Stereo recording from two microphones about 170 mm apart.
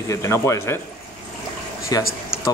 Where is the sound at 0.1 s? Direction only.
15° left (ahead or behind).